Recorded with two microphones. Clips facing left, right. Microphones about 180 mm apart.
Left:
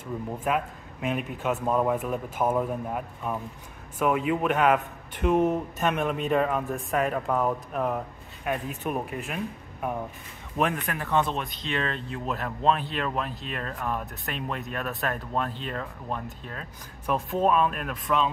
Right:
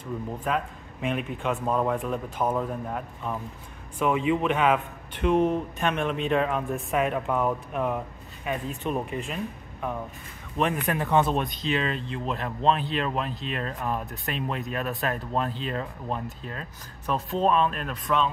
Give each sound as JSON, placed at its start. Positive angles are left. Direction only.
{"t": 0.5, "sound": "speech", "side_deg": 5}
{"t": 10.9, "sound": "speech", "side_deg": -20}
{"t": 12.1, "sound": "speech", "side_deg": 5}